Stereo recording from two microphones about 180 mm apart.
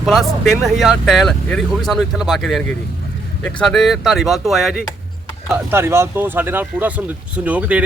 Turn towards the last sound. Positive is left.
turn(degrees=-5)  # may be behind; listen again after turning